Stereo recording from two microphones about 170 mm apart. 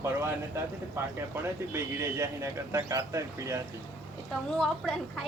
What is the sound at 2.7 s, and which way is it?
Speech, 20° right (ahead or behind).